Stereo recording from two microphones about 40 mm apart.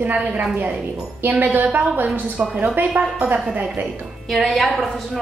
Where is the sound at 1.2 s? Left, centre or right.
Right.